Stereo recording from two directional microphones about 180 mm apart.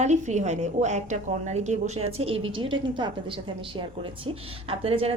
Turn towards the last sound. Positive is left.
turn(degrees=-35)  # may be behind; listen again after turning